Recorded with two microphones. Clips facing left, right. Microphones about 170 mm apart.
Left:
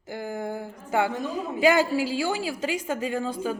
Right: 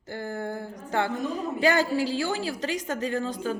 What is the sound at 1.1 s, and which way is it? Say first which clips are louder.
Speech: right 1 dB; centre (ahead or behind).